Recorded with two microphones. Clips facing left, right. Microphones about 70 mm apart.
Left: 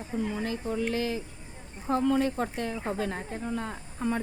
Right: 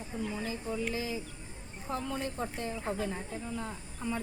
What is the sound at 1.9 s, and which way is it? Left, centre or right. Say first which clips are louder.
Speech: left 10 dB; left.